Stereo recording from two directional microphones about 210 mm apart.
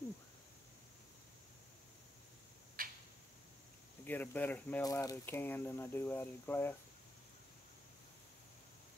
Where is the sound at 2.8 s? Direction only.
45° right (ahead or behind).